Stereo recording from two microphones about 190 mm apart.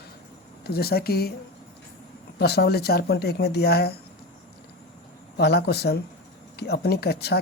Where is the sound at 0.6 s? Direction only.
55° left (ahead or behind).